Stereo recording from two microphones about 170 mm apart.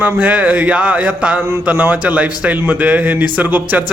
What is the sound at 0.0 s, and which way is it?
Speech, 10° right (ahead or behind).